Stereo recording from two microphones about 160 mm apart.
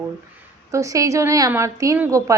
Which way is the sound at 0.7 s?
20° right (ahead or behind).